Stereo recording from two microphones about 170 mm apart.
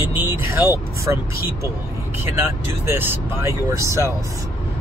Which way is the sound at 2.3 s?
15° right (ahead or behind).